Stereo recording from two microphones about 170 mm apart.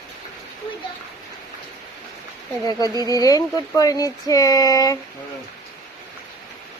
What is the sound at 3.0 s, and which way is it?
Speech, 20° left (ahead or behind).